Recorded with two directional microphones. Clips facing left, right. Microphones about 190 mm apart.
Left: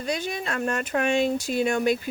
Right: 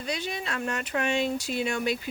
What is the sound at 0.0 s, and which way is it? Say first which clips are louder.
Speech: left 4 dB; 45° left (ahead or behind).